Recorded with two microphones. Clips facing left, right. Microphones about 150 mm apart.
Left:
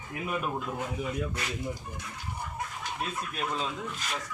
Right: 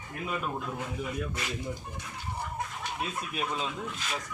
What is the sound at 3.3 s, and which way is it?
Speech, centre (ahead or behind).